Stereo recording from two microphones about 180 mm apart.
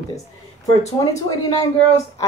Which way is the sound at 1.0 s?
25° left (ahead or behind).